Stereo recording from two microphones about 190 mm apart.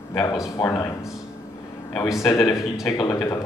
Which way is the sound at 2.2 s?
15° left (ahead or behind).